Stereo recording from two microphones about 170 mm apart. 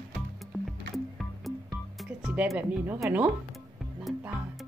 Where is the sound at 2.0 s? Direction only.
5° right (ahead or behind).